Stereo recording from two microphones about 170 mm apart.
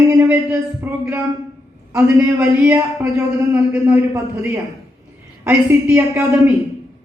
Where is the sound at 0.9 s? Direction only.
10° right (ahead or behind).